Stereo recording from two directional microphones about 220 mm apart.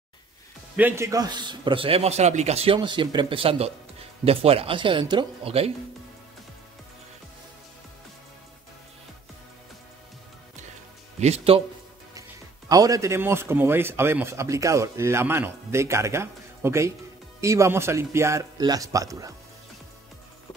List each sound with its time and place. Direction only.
0.7 s a man's voice: 10° right (ahead or behind); by 5.7 s 25° right (ahead or behind)
11.1 s a man's voice: 30° right (ahead or behind)
12.1 s a man's voice: 15° right (ahead or behind)